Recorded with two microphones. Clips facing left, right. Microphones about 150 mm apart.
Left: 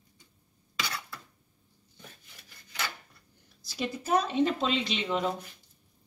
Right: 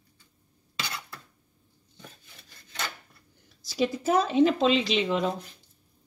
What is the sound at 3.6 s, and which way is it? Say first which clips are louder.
Speech: right 7 dB; 90° right.